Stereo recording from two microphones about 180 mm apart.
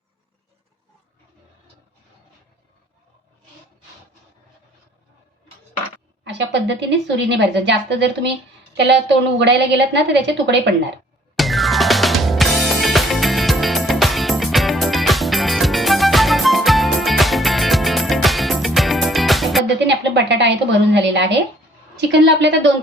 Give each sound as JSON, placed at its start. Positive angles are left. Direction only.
{"t": 6.2, "sound": "a woman's voice", "side_deg": -80}
{"t": 11.3, "sound": "music", "side_deg": 0}
{"t": 19.9, "sound": "a woman's voice", "side_deg": -75}